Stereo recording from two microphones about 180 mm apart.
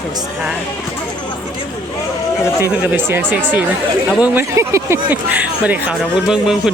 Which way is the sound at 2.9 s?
10° right (ahead or behind).